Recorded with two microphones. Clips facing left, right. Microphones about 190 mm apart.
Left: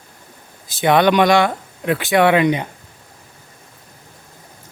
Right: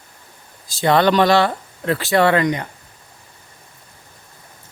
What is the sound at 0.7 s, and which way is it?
Speech, 20° left (ahead or behind).